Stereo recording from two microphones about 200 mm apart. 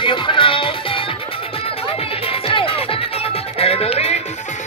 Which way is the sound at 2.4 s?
30° left (ahead or behind).